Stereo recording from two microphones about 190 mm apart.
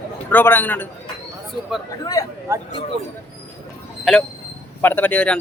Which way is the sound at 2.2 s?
20° left (ahead or behind).